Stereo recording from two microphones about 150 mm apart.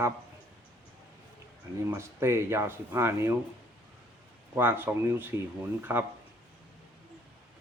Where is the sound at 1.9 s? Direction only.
15° right (ahead or behind).